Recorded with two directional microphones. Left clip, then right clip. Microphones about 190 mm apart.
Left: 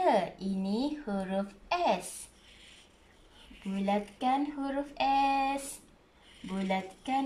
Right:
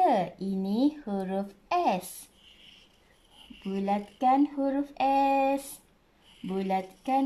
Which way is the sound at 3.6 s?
15° right (ahead or behind).